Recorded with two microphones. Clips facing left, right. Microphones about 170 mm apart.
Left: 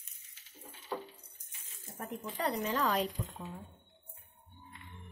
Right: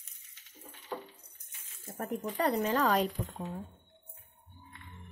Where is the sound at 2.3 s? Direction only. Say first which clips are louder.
Right 4 dB; 55° right (ahead or behind).